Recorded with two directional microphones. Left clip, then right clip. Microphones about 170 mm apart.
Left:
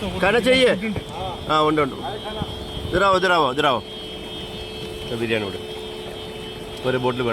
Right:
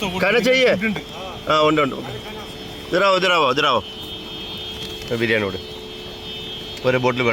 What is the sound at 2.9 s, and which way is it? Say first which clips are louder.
Speech: right 1 dB; 35° right (ahead or behind).